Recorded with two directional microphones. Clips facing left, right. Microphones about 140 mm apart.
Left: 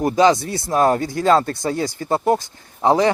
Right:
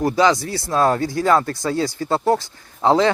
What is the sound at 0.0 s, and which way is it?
Speech, 20° left (ahead or behind).